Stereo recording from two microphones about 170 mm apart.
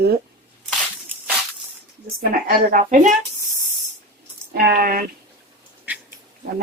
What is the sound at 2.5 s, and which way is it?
Speech, 50° right (ahead or behind).